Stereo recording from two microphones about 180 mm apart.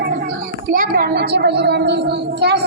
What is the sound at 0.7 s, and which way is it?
A woman's voice, 50° right (ahead or behind).